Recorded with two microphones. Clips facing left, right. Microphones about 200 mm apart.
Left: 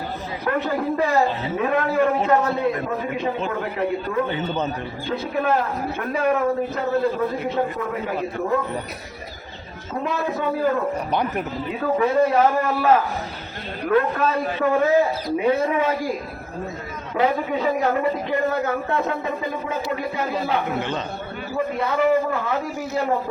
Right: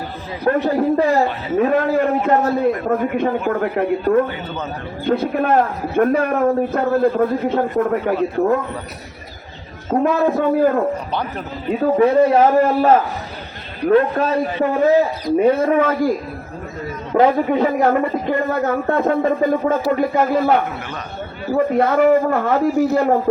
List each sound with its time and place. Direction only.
0.4 s a man's voice: 40° right (ahead or behind)
2.9 s a man's voice: 55° right (ahead or behind)
9.9 s a man's voice: 50° right (ahead or behind)
11.1 s speech: 10° left (ahead or behind)
11.7 s a man's voice: 35° right (ahead or behind)
15.4 s a man's voice: 50° right (ahead or behind)
17.2 s a man's voice: 50° right (ahead or behind)